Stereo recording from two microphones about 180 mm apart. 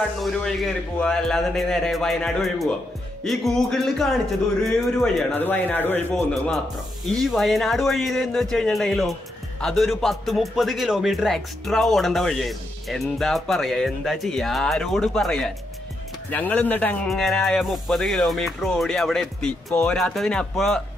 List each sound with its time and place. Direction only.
0.2 s a man's voice: centre (ahead or behind)